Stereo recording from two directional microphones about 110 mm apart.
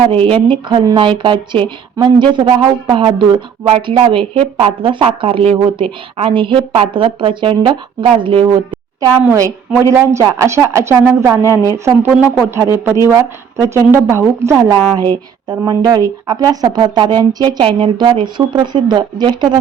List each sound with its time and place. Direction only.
0.0 s speech: 55° right (ahead or behind)
9.0 s a woman's voice: 25° right (ahead or behind)
11.3 s speech: 30° right (ahead or behind)
12.0 s speech: 10° right (ahead or behind)
12.5 s a woman's voice: 25° right (ahead or behind)
15.4 s speech: 35° right (ahead or behind)